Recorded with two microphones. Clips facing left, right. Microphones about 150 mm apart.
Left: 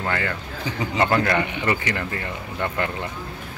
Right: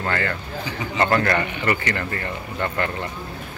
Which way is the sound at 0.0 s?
10° left (ahead or behind).